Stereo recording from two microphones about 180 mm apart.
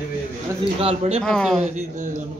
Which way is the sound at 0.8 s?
35° right (ahead or behind).